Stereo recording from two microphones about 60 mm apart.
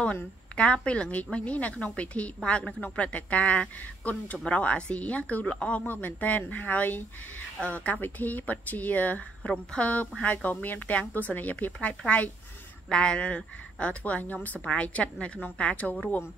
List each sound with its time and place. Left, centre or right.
0.6 s a woman's voice: centre